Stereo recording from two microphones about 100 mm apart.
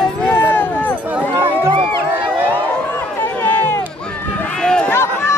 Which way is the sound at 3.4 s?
15° left (ahead or behind).